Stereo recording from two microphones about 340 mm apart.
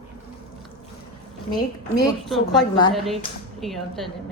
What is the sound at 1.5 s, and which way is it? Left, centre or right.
Speech, left.